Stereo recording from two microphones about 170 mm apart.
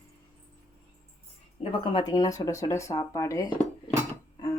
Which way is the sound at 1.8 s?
30° left (ahead or behind).